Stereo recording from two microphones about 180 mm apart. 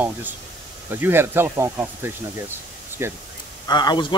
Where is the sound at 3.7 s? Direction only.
25° left (ahead or behind).